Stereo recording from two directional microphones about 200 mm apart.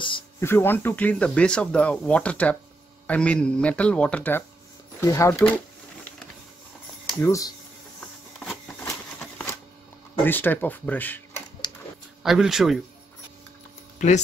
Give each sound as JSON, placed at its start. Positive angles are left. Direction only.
{"t": 0.4, "sound": "speech", "side_deg": 10}
{"t": 7.2, "sound": "speech", "side_deg": 15}
{"t": 8.4, "sound": "a sound", "side_deg": 0}
{"t": 10.2, "sound": "speech", "side_deg": 10}
{"t": 12.2, "sound": "speech", "side_deg": 0}
{"t": 13.9, "sound": "speech", "side_deg": 35}